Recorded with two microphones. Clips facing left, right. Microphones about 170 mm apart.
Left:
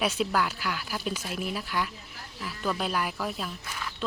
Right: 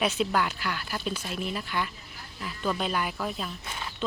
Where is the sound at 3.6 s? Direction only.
25° right (ahead or behind).